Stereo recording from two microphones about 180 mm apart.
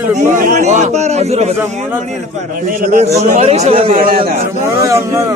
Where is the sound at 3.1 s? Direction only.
35° right (ahead or behind).